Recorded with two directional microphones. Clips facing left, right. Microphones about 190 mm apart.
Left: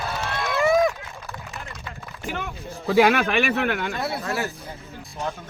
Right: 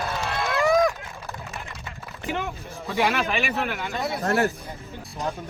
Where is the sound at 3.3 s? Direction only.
65° left (ahead or behind).